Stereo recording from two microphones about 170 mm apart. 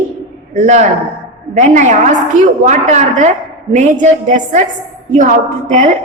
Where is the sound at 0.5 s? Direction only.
45° right (ahead or behind).